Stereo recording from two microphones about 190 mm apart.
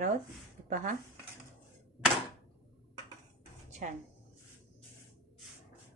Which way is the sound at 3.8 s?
45° right (ahead or behind).